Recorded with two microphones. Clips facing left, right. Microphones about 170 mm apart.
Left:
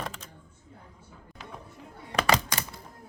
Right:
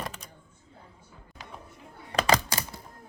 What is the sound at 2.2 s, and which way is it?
Computer keyboard, 35° right (ahead or behind).